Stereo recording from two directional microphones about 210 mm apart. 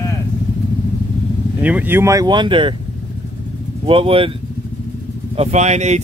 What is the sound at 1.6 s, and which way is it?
Speech, 5° right (ahead or behind).